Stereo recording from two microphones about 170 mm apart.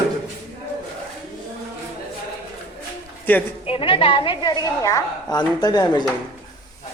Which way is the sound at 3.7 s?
30° left (ahead or behind).